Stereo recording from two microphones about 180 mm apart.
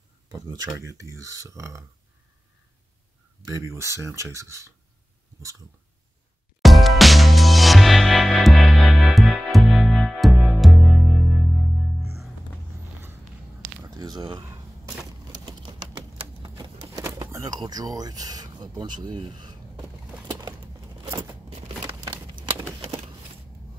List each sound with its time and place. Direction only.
0.3 s speech: 20° right (ahead or behind)
3.4 s speech: 20° right (ahead or behind)
6.6 s music: centre (ahead or behind)
13.8 s speech: 20° right (ahead or behind)
15.0 s typewriter: 25° right (ahead or behind)
17.0 s speech: 20° right (ahead or behind)
20.3 s a sound: 25° right (ahead or behind)
21.5 s a sound: 30° right (ahead or behind)